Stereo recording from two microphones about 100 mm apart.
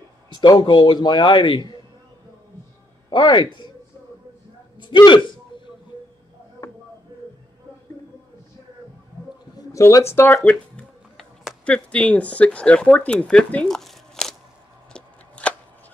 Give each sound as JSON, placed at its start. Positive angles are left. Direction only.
{"t": 0.3, "sound": "speech", "side_deg": 50}
{"t": 3.1, "sound": "speech", "side_deg": 50}
{"t": 4.8, "sound": "a man's voice", "side_deg": 50}
{"t": 9.6, "sound": "speech", "side_deg": 30}
{"t": 14.9, "sound": "a sound", "side_deg": 10}